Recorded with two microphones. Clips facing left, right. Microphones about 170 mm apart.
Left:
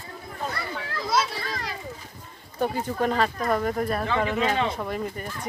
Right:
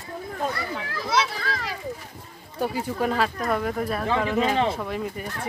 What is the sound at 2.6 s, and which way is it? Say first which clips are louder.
Speech: even; 5° right (ahead or behind).